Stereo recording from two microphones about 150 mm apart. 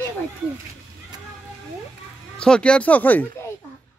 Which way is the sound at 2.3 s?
5° left (ahead or behind).